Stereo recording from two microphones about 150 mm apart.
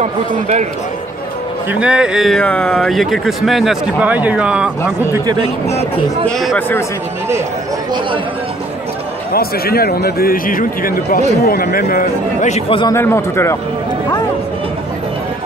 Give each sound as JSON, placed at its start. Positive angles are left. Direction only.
{"t": 0.0, "sound": "speech", "side_deg": -50}
{"t": 1.7, "sound": "a man's voice", "side_deg": -5}
{"t": 2.4, "sound": "speech", "side_deg": 10}
{"t": 2.7, "sound": "a man's voice", "side_deg": 0}
{"t": 5.2, "sound": "speech", "side_deg": -30}
{"t": 5.7, "sound": "speech", "side_deg": 45}
{"t": 6.2, "sound": "a man's voice", "side_deg": 0}
{"t": 9.3, "sound": "speech", "side_deg": 90}
{"t": 11.4, "sound": "a man's voice", "side_deg": 85}
{"t": 12.8, "sound": "speech", "side_deg": 15}